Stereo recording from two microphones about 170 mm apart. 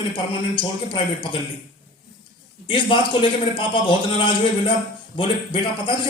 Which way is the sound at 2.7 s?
30° left (ahead or behind).